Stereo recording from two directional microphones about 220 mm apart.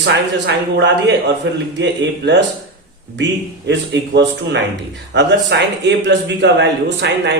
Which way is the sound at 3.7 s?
55° right (ahead or behind).